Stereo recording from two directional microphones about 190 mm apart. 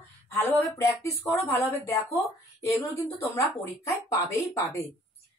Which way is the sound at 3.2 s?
15° left (ahead or behind).